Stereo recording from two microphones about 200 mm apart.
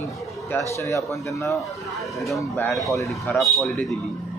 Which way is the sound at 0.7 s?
15° left (ahead or behind).